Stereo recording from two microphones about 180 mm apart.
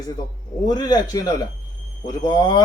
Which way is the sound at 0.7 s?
20° left (ahead or behind).